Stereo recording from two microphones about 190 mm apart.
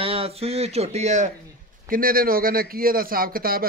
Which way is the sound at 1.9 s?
50° right (ahead or behind).